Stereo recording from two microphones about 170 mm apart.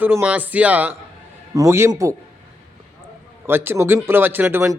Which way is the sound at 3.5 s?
15° right (ahead or behind).